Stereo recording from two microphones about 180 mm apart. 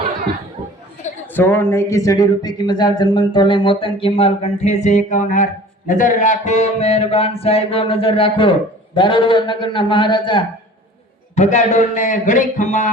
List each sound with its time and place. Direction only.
1.3 s speech: 10° left (ahead or behind); by 5.5 s 45° left (ahead or behind)
5.9 s a sound: 45° left (ahead or behind); by 8.5 s 30° left (ahead or behind)
9.0 s speech: 25° left (ahead or behind)
11.3 s a man's voice: 40° left (ahead or behind)